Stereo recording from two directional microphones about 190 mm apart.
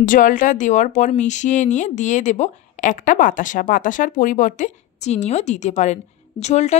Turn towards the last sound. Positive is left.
turn(degrees=35)  # may be behind; listen again after turning